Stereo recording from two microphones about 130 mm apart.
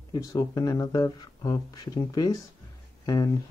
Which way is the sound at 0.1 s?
25° left (ahead or behind).